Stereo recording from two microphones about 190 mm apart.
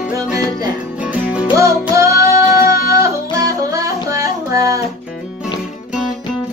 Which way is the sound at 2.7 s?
50° left (ahead or behind).